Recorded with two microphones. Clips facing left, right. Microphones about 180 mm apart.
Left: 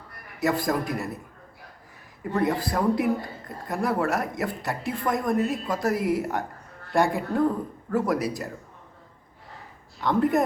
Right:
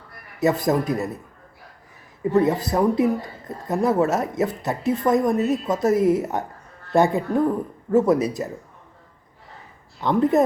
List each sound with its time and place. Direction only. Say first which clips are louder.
0.3 s a woman's voice: right 5 dB; 20° right (ahead or behind)
2.3 s a woman's voice: right 5 dB; 20° right (ahead or behind)
10.0 s a woman's voice: right 4 dB; 20° right (ahead or behind)